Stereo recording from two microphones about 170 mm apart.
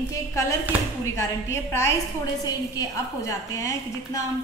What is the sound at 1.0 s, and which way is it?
Speech, 15° left (ahead or behind).